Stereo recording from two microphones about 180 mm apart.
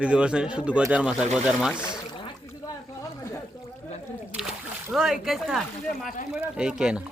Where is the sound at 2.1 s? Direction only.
25° left (ahead or behind).